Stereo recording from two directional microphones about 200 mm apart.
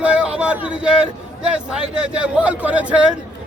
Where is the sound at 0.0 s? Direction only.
5° right (ahead or behind).